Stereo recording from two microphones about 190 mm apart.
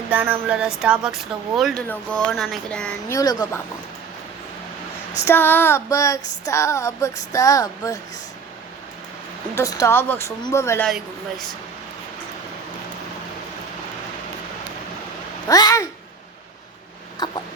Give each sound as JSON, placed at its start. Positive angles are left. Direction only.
{"t": 0.1, "sound": "a sound", "side_deg": -10}
{"t": 0.4, "sound": "speech", "side_deg": -5}
{"t": 3.1, "sound": "speech", "side_deg": 20}
{"t": 5.1, "sound": "female singing", "side_deg": 15}
{"t": 9.6, "sound": "female singing", "side_deg": 15}
{"t": 10.8, "sound": "speech", "side_deg": 0}
{"t": 15.4, "sound": "female singing", "side_deg": 20}
{"t": 17.2, "sound": "a sound", "side_deg": 20}